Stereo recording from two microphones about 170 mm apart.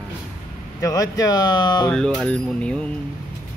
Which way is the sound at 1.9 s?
5° left (ahead or behind).